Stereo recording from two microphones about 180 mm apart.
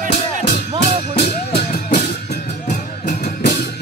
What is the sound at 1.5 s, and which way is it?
Music, 55° left (ahead or behind).